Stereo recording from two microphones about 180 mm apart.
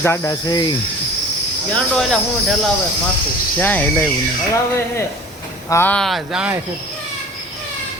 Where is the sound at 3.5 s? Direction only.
10° left (ahead or behind).